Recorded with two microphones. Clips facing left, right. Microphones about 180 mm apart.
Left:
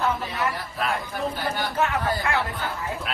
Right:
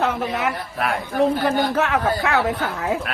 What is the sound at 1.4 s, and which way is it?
A woman's voice, 90° right.